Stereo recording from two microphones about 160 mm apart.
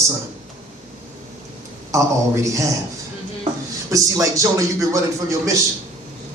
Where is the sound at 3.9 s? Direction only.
20° right (ahead or behind).